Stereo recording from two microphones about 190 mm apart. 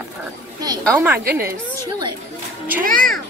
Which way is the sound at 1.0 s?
10° right (ahead or behind).